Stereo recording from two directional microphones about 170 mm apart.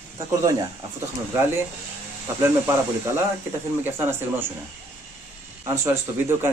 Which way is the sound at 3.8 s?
10° right (ahead or behind).